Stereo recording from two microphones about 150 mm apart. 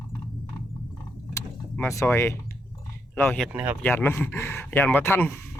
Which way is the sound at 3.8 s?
15° left (ahead or behind).